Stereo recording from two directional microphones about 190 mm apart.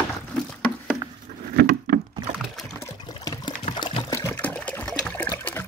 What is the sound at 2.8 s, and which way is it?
Water, 20° left (ahead or behind).